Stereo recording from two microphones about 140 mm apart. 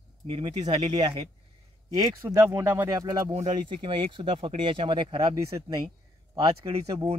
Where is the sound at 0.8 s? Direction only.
30° right (ahead or behind); by 2.9 s 15° right (ahead or behind).